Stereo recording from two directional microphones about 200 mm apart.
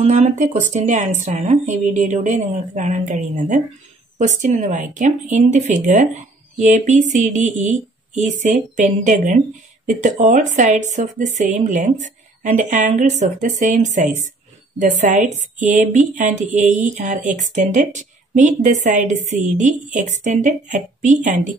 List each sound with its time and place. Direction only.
0.0 s a woman's voice: 35° right (ahead or behind)